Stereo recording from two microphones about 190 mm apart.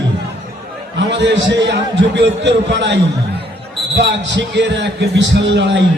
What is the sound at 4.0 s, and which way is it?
A man's voice, 70° right (ahead or behind).